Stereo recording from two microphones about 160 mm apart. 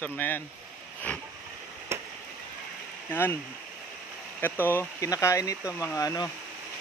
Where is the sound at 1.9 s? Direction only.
15° right (ahead or behind).